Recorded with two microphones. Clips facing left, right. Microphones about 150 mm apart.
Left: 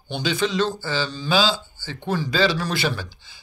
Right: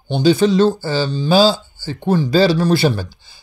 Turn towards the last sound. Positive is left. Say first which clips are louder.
# right 7 dB
turn(degrees=-40)  # may be behind; listen again after turning